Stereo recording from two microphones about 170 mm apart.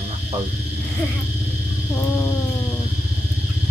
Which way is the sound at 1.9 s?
15° left (ahead or behind).